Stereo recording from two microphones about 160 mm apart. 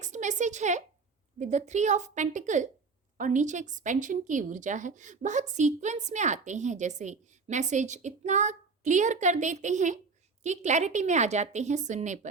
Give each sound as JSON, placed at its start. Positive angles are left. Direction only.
{"t": 0.0, "sound": "speech", "side_deg": -50}